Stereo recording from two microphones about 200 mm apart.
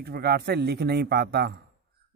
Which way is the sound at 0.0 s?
50° right (ahead or behind).